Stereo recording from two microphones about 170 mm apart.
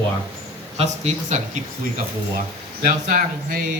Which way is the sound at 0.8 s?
45° right (ahead or behind).